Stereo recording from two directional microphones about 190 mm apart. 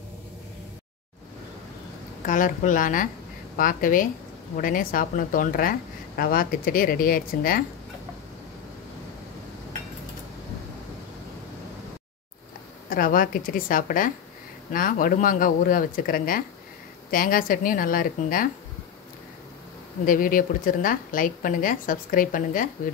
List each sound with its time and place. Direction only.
2.2 s speech: 45° left (ahead or behind)
12.9 s speech: 45° left (ahead or behind)
20.1 s speech: 45° left (ahead or behind)